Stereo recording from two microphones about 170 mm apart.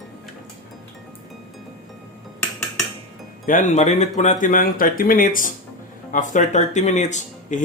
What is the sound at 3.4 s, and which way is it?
Speech, 50° left (ahead or behind).